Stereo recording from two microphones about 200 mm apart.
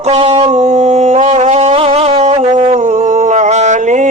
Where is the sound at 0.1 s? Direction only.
30° right (ahead or behind).